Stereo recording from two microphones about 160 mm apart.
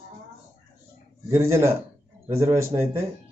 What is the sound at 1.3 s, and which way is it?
Speech, 20° right (ahead or behind).